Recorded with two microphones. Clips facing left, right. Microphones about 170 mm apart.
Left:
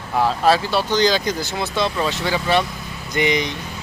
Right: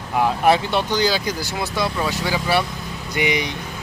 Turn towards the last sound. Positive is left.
turn(degrees=-10)  # may be behind; listen again after turning